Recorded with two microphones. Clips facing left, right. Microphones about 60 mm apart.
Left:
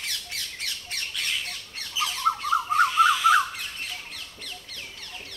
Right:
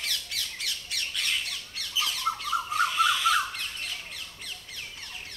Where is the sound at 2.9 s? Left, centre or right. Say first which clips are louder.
Left 5 dB; centre.